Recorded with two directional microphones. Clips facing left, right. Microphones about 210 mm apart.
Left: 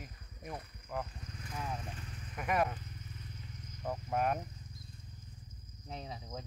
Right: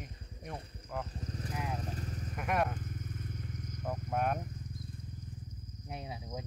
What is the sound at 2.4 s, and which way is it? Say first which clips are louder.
Speech: even; centre (ahead or behind).